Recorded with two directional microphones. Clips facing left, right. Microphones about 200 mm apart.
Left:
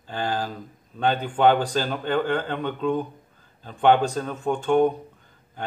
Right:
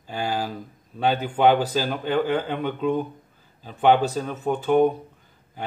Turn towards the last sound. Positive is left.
turn(degrees=-5)  # may be behind; listen again after turning